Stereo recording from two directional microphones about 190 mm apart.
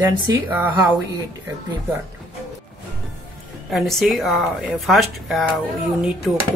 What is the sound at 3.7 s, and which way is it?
Speech, centre (ahead or behind).